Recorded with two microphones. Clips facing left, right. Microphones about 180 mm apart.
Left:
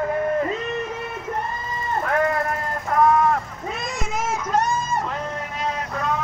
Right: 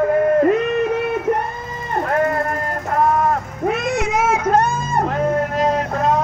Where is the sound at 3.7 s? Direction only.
65° right (ahead or behind).